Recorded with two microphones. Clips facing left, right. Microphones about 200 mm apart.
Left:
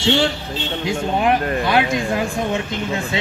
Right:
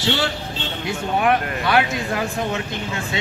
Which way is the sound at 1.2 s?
25° left (ahead or behind).